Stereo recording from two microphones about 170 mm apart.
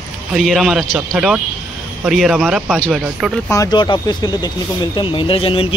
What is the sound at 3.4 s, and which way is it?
Speech, 20° left (ahead or behind).